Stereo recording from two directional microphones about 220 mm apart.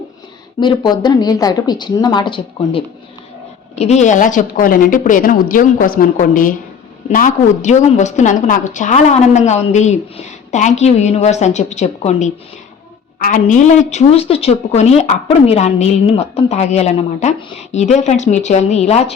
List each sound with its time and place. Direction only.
0.6 s a woman's voice: 20° left (ahead or behind)